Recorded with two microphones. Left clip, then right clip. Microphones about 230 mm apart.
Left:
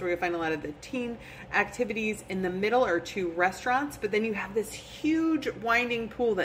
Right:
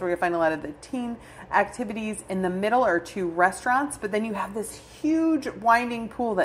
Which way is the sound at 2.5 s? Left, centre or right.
Centre.